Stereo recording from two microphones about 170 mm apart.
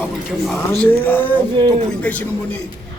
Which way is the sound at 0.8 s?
10° left (ahead or behind).